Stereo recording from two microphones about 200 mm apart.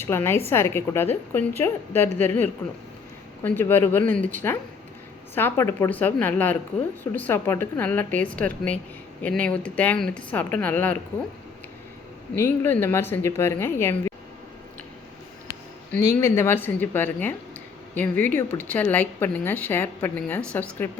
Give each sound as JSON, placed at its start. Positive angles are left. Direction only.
{"t": 0.0, "sound": "a woman's voice", "side_deg": 10}
{"t": 12.4, "sound": "a woman's voice", "side_deg": 10}
{"t": 15.4, "sound": "a sound", "side_deg": 15}
{"t": 16.2, "sound": "a woman's voice", "side_deg": 15}